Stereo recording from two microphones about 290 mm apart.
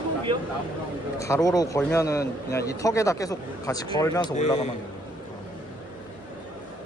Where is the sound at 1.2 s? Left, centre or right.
Centre.